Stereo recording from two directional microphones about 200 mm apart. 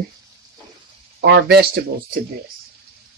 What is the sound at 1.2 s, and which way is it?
Speech, 55° right (ahead or behind).